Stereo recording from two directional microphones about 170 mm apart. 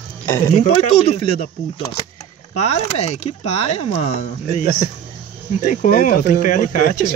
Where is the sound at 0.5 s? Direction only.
40° left (ahead or behind).